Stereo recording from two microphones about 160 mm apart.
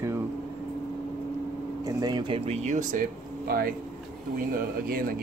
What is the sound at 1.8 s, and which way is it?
Speech, 25° right (ahead or behind).